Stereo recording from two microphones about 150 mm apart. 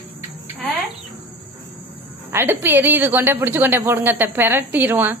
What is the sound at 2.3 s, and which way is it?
A woman's voice, 15° right (ahead or behind).